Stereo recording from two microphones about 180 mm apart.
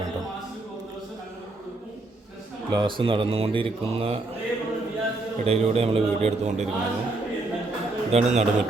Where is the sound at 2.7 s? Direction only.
30° right (ahead or behind).